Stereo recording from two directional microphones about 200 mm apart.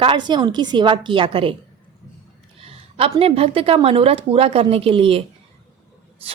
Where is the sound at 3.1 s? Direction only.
30° right (ahead or behind).